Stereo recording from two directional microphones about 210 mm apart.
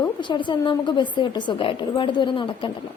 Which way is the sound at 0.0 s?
20° left (ahead or behind).